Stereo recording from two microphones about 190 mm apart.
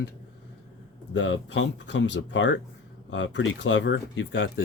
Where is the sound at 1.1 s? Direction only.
75° left (ahead or behind).